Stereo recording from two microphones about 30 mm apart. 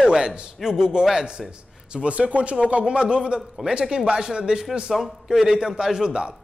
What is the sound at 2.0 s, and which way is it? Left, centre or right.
Speech, right.